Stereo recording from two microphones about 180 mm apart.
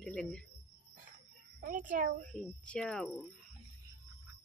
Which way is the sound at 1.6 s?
45° right (ahead or behind).